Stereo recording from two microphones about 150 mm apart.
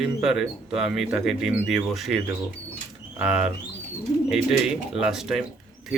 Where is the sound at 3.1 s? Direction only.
5° right (ahead or behind).